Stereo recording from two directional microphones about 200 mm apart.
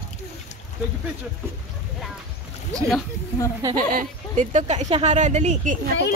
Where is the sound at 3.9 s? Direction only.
40° right (ahead or behind).